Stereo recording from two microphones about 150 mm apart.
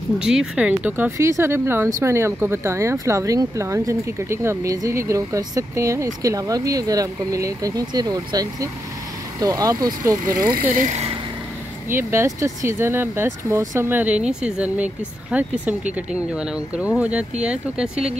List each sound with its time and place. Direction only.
0.2 s speech: 5° right (ahead or behind); by 10.5 s 25° right (ahead or behind)
10.5 s speech: 55° right (ahead or behind)
11.9 s speech: 15° right (ahead or behind)